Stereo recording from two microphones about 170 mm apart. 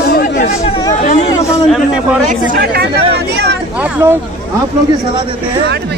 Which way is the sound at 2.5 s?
70° right (ahead or behind).